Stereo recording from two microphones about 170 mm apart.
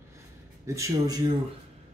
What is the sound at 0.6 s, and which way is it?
Speech, 15° right (ahead or behind).